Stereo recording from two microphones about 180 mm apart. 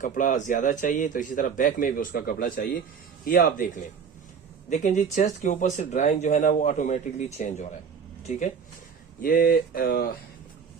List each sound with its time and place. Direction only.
0.0 s a man's voice: 45° left (ahead or behind)
4.7 s a man's voice: 40° left (ahead or behind)
9.2 s speech: 55° left (ahead or behind)